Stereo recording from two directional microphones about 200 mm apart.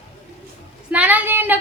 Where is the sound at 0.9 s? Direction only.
10° right (ahead or behind).